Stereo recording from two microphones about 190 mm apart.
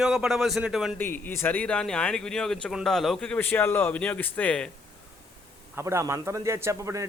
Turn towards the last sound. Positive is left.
turn(degrees=-15)  # may be behind; listen again after turning